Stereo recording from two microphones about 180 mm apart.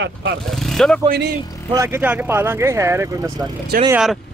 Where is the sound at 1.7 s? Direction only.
15° right (ahead or behind).